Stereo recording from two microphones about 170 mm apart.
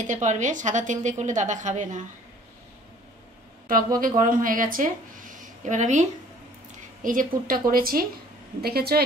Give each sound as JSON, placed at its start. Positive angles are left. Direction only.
{"t": 0.0, "sound": "a woman's voice", "side_deg": -45}
{"t": 3.6, "sound": "speech", "side_deg": -55}